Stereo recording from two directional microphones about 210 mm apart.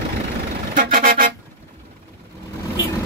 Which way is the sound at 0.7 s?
40° right (ahead or behind).